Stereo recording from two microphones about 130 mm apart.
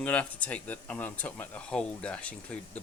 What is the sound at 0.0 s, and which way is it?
Speech, 10° left (ahead or behind).